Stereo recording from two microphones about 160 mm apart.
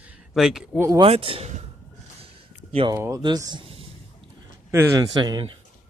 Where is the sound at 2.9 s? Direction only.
20° right (ahead or behind); by 3.8 s 35° right (ahead or behind).